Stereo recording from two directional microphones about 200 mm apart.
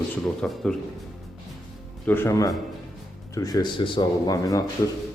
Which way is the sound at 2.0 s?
10° left (ahead or behind).